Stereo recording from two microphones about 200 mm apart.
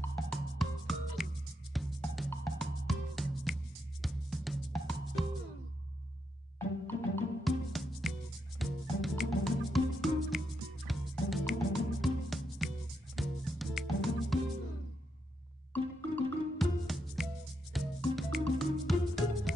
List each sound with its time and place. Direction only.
0.0 s music: 5° left (ahead or behind)
6.9 s music: 5° left (ahead or behind)
15.7 s music: 5° left (ahead or behind)